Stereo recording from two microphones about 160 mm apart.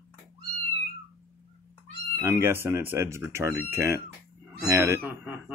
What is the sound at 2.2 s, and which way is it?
Speech, 15° right (ahead or behind).